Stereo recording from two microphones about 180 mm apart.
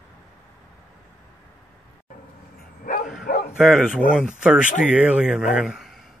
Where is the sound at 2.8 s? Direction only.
50° left (ahead or behind).